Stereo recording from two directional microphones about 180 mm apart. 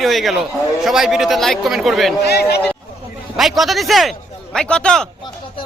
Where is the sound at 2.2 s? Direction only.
65° left (ahead or behind).